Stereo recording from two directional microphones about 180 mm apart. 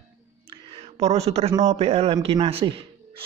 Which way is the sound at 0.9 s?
35° right (ahead or behind).